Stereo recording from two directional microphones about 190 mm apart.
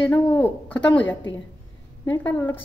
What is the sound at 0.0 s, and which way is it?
A woman's voice, 10° left (ahead or behind).